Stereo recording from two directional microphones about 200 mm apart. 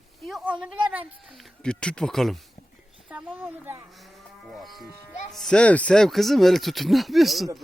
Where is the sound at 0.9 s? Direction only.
5° right (ahead or behind).